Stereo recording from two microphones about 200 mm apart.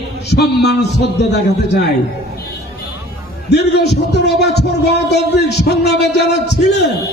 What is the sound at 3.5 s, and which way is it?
A man's voice, 55° left (ahead or behind).